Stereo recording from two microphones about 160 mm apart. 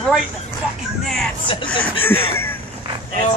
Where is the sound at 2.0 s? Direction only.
15° left (ahead or behind).